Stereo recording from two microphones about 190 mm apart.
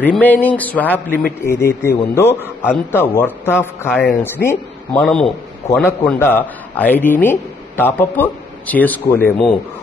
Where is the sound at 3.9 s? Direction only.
Centre (ahead or behind).